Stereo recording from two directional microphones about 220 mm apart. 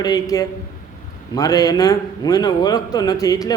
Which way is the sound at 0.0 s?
15° left (ahead or behind).